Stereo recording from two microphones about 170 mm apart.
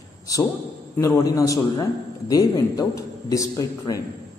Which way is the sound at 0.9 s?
20° left (ahead or behind).